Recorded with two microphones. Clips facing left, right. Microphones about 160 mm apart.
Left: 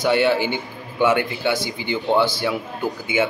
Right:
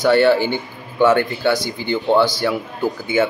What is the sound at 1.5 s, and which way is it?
Speech, 40° right (ahead or behind).